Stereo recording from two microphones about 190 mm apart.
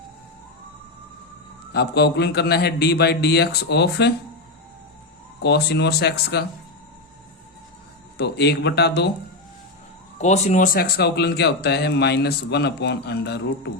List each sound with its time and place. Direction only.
1.7 s speech: 60° left (ahead or behind)
5.4 s speech: 60° left (ahead or behind)
8.2 s speech: 60° left (ahead or behind)
10.2 s speech: 35° left (ahead or behind); by 13.4 s 60° left (ahead or behind)